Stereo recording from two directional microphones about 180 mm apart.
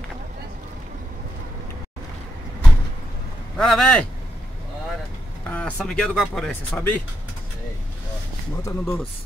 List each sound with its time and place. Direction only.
3.5 s speech: 5° left (ahead or behind)
5.5 s speech: 5° left (ahead or behind)
8.6 s speech: 15° left (ahead or behind)